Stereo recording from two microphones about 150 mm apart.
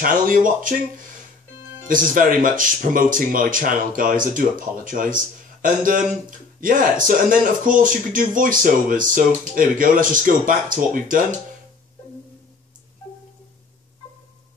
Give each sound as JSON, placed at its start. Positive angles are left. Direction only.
{"t": 0.0, "sound": "speech", "side_deg": -65}
{"t": 1.9, "sound": "speech", "side_deg": -65}